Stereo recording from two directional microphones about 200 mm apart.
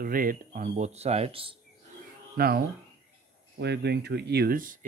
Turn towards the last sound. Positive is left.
turn(degrees=-45)  # may be behind; listen again after turning